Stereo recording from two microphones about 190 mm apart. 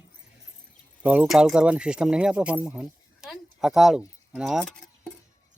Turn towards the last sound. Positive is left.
turn(degrees=5)  # may be behind; listen again after turning